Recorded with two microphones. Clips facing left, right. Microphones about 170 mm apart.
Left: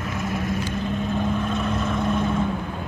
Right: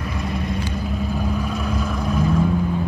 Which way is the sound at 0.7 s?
10° right (ahead or behind).